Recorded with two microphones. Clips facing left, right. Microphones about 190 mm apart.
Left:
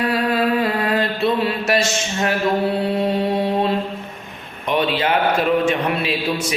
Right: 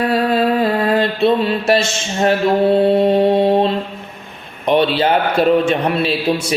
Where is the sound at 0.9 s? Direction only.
30° right (ahead or behind).